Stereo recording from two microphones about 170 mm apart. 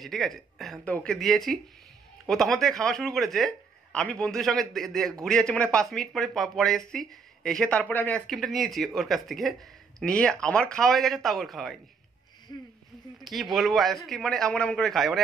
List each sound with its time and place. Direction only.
0.0 s speech: centre (ahead or behind)
12.5 s speech: 20° left (ahead or behind)
13.2 s speech: centre (ahead or behind)